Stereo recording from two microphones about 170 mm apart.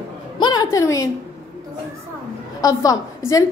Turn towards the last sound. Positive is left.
turn(degrees=20)  # may be behind; listen again after turning